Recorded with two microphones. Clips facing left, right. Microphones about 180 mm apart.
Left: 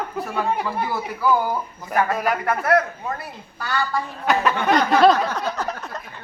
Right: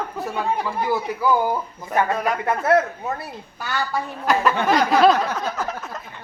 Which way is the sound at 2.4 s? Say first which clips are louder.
Right 2 dB; 25° right (ahead or behind).